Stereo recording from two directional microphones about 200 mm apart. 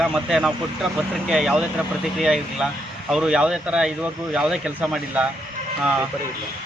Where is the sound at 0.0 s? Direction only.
Centre (ahead or behind).